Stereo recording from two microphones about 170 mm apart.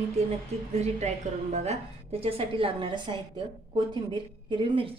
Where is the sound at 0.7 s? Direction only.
40° right (ahead or behind).